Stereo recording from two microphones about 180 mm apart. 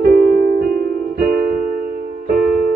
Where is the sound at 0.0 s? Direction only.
55° right (ahead or behind).